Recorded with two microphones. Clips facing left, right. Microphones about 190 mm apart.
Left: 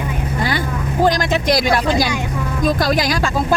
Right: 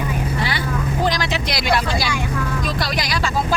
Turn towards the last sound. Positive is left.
turn(degrees=45)  # may be behind; listen again after turning